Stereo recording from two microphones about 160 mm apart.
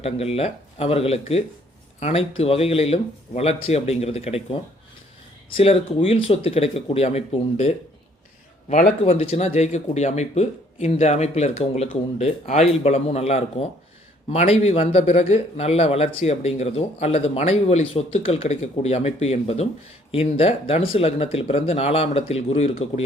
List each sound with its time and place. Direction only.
0.0 s a man's voice: 40° left (ahead or behind)